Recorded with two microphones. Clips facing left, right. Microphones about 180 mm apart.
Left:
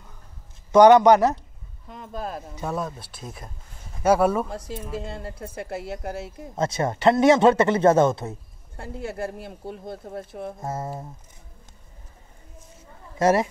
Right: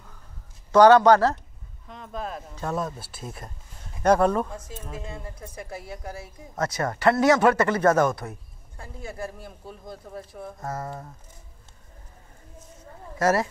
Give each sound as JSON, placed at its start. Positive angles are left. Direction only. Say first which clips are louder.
{"t": 0.7, "sound": "speech", "louder": "left 2 dB", "side_deg": 15}
{"t": 2.7, "sound": "speech", "louder": "right 1 dB", "side_deg": 0}
{"t": 5.0, "sound": "a woman's voice", "louder": "left 4 dB", "side_deg": 70}
{"t": 6.5, "sound": "speech", "louder": "left 2 dB", "side_deg": 25}
{"t": 8.7, "sound": "speech", "louder": "left 5 dB", "side_deg": 75}
{"t": 10.3, "sound": "speech", "louder": "left 2 dB", "side_deg": 25}
{"t": 13.2, "sound": "speech", "louder": "left 3 dB", "side_deg": 20}